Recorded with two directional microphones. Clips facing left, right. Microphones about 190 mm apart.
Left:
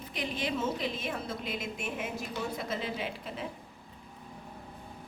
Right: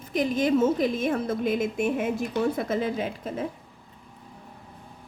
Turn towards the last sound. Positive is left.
turn(degrees=-45)  # may be behind; listen again after turning